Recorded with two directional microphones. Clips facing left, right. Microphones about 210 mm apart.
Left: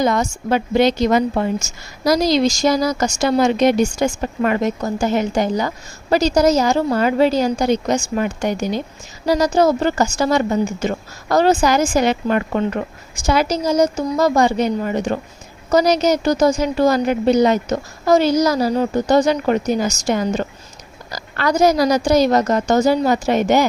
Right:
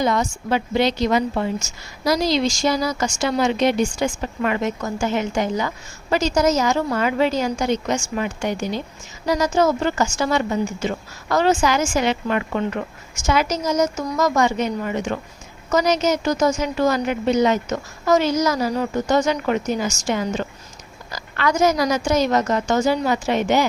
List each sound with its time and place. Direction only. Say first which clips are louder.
0.0 s a woman's voice: left 3 dB; 45° left (ahead or behind)